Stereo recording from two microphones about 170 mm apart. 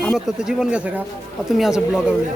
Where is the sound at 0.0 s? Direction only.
Centre (ahead or behind).